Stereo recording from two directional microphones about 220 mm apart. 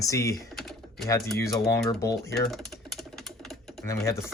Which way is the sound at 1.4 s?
15° left (ahead or behind).